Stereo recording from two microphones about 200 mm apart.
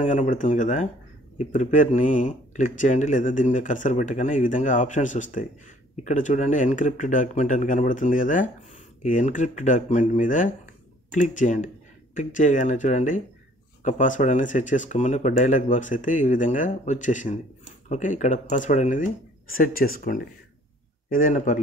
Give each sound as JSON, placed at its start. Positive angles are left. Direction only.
{"t": 0.0, "sound": "speech", "side_deg": 35}